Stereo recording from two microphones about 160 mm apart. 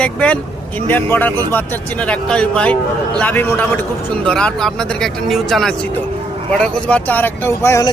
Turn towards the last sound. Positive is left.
turn(degrees=15)  # may be behind; listen again after turning